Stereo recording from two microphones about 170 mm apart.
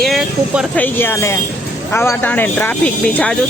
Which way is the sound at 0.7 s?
10° left (ahead or behind).